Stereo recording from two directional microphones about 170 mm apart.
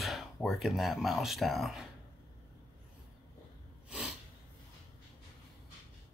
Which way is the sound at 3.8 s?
5° right (ahead or behind).